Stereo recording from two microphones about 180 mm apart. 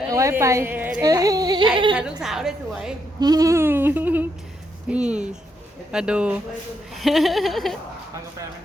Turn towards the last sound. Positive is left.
turn(degrees=0)  # may be behind; listen again after turning